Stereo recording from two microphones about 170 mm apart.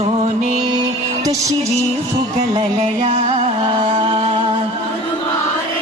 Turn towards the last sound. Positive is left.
turn(degrees=-35)  # may be behind; listen again after turning